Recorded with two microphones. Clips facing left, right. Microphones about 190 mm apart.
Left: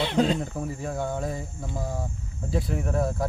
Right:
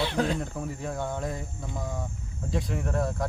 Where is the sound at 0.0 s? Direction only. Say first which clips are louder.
Left 4 dB; 20° left (ahead or behind).